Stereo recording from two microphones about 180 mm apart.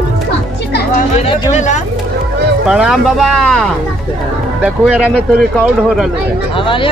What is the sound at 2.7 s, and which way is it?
Speech, centre (ahead or behind).